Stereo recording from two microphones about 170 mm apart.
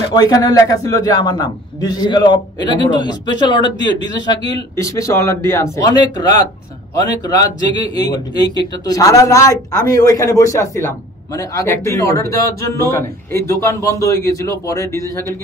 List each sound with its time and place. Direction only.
0.1 s a man's voice: 25° left (ahead or behind)
7.2 s a man's voice: 20° left (ahead or behind)